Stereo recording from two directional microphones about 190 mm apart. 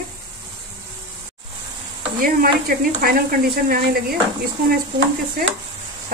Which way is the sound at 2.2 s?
50° right (ahead or behind).